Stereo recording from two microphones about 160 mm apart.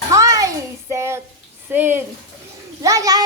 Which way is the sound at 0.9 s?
15° right (ahead or behind).